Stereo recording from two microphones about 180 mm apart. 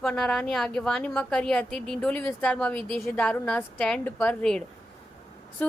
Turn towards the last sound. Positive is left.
turn(degrees=5)  # may be behind; listen again after turning